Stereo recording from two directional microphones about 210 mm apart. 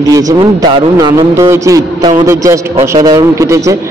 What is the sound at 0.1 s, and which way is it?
A man's voice, 15° right (ahead or behind).